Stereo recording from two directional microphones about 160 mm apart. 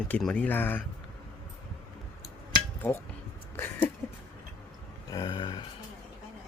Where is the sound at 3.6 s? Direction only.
10° left (ahead or behind).